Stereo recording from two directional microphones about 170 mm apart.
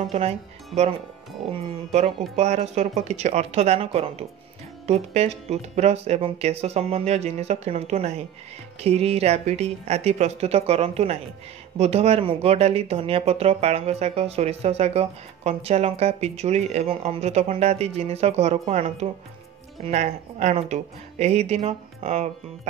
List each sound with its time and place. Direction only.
0.1 s speech: 35° right (ahead or behind)
1.9 s speech: 40° right (ahead or behind)